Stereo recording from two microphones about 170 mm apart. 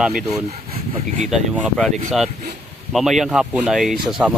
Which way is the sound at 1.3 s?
Centre (ahead or behind).